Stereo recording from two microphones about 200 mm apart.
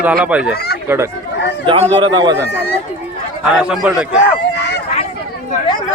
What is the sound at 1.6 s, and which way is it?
Speech, 30° right (ahead or behind).